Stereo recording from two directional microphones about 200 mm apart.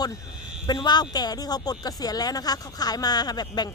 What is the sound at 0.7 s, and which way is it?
Speech, 20° left (ahead or behind).